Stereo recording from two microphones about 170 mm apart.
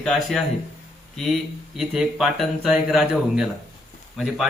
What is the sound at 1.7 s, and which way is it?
A man's voice, centre (ahead or behind).